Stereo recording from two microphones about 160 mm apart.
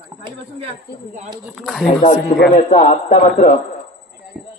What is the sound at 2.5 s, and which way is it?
Speech, 50° left (ahead or behind).